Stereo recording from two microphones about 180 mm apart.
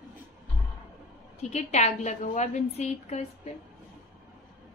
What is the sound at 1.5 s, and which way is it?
A woman's voice, 40° left (ahead or behind).